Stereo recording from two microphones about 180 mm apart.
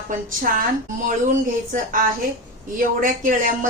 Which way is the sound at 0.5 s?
50° right (ahead or behind).